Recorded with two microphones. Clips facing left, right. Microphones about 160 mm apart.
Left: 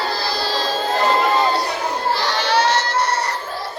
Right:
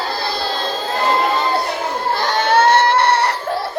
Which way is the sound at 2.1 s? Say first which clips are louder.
Right 6 dB; 50° right (ahead or behind).